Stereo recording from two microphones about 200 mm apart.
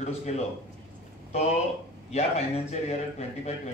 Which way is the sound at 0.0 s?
30° left (ahead or behind).